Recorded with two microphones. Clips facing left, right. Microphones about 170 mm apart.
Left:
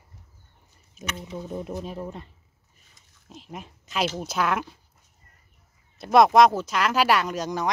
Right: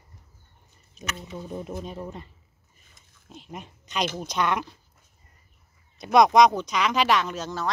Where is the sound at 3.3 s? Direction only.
Centre (ahead or behind).